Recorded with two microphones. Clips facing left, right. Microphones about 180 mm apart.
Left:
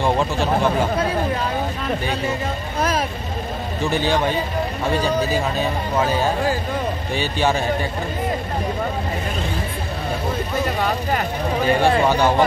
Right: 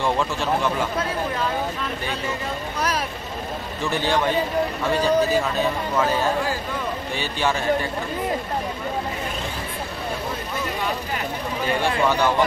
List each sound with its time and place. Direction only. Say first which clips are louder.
0.0 s a man's voice: left 3 dB; 30° left (ahead or behind)
11.8 s a man's voice: left 2 dB; 35° left (ahead or behind)